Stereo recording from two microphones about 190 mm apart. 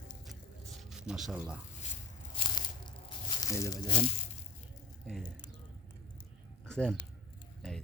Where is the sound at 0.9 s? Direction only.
5° right (ahead or behind).